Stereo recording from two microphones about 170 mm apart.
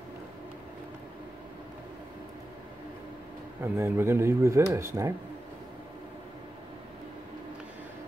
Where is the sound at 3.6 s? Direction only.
15° right (ahead or behind).